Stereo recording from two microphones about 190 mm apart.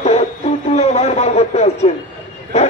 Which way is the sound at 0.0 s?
35° left (ahead or behind).